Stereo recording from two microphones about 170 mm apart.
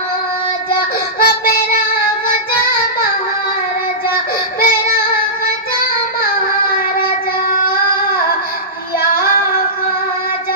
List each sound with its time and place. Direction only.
1.2 s child singing: 60° left (ahead or behind)
4.6 s music: 60° left (ahead or behind)